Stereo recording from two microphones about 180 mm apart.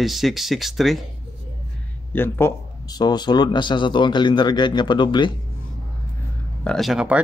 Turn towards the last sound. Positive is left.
turn(degrees=-5)  # may be behind; listen again after turning